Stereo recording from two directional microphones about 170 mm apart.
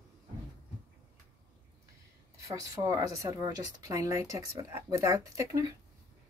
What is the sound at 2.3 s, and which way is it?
A woman's voice, 20° right (ahead or behind).